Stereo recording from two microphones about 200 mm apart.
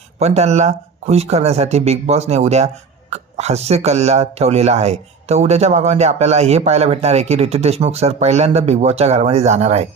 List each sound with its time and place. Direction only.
0.2 s speech: 35° right (ahead or behind)